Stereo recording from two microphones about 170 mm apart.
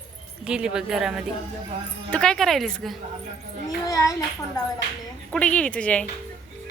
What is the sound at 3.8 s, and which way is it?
Speech, 20° left (ahead or behind).